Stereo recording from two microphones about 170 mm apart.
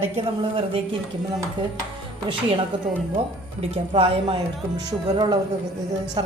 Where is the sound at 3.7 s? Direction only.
35° right (ahead or behind).